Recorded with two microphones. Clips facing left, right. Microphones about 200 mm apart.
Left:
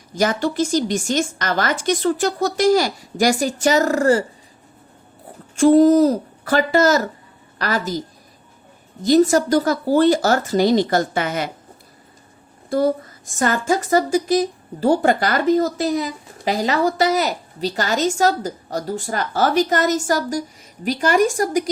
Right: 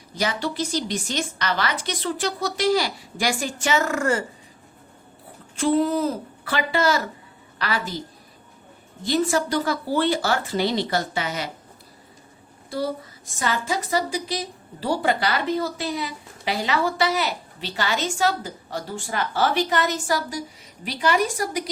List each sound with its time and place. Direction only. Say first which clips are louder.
0.1 s a woman's voice: left 6 dB; 45° left (ahead or behind)
5.5 s a woman's voice: left 9 dB; 45° left (ahead or behind)
12.7 s a woman's voice: left 8 dB; 50° left (ahead or behind)